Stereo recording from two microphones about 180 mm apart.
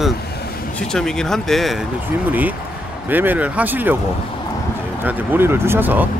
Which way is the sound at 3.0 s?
10° right (ahead or behind).